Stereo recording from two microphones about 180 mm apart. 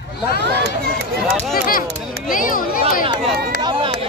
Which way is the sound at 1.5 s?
50° left (ahead or behind).